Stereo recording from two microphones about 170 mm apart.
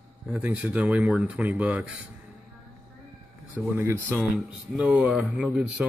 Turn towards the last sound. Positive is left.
turn(degrees=-5)  # may be behind; listen again after turning